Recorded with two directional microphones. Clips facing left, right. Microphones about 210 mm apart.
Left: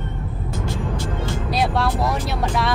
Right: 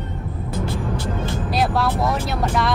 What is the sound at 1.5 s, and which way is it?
Vehicle, centre (ahead or behind).